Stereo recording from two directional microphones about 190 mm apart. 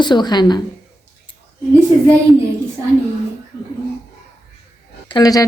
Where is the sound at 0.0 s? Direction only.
25° left (ahead or behind).